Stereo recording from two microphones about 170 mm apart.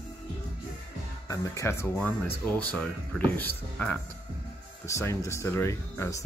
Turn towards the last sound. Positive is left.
turn(degrees=15)  # may be behind; listen again after turning